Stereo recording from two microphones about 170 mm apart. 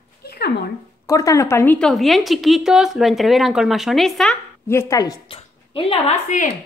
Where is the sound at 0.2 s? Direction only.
65° left (ahead or behind).